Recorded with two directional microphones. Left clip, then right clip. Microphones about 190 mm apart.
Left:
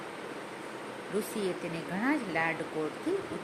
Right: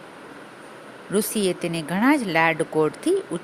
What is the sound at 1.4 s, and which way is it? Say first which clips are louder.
Speech: right 9 dB; 60° right (ahead or behind).